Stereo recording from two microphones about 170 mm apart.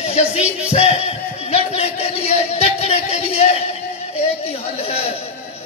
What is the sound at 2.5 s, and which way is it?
Speech, 40° left (ahead or behind).